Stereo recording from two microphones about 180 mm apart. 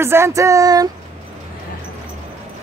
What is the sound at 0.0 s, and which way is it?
Speech, 15° right (ahead or behind).